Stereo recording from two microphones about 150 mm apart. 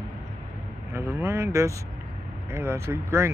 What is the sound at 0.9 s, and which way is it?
Speech, 15° right (ahead or behind).